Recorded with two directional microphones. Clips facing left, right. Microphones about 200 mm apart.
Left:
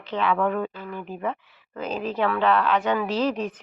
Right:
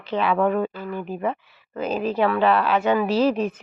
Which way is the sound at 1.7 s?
10° right (ahead or behind).